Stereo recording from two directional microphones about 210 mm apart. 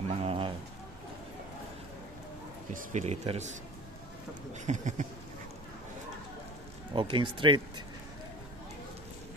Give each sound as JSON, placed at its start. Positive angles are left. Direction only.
{"t": 0.1, "sound": "a sound", "side_deg": -30}
{"t": 2.7, "sound": "speech", "side_deg": -35}
{"t": 4.6, "sound": "speech", "side_deg": -35}
{"t": 6.9, "sound": "speech", "side_deg": -25}